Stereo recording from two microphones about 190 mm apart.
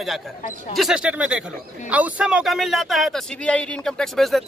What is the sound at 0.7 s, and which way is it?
A man's voice, 5° right (ahead or behind).